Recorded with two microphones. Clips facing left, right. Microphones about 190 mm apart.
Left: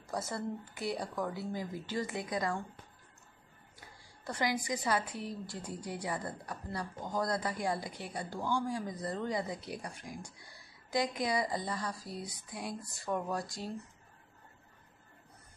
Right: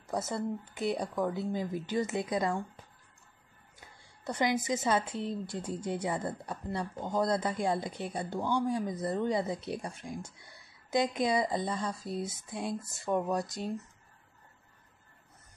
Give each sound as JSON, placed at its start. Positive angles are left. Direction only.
{"t": 0.1, "sound": "a woman's voice", "side_deg": -20}
{"t": 4.2, "sound": "a woman's voice", "side_deg": -20}